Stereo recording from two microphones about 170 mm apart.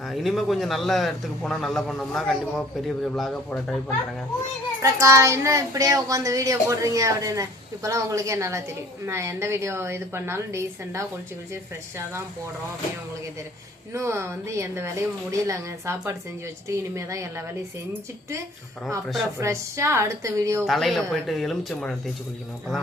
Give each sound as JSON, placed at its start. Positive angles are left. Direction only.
{"t": 0.1, "sound": "a man's voice", "side_deg": 0}
{"t": 4.8, "sound": "a woman's voice", "side_deg": -15}
{"t": 13.9, "sound": "a woman's voice", "side_deg": -15}
{"t": 19.4, "sound": "a woman's voice", "side_deg": -15}
{"t": 20.7, "sound": "a man's voice", "side_deg": 0}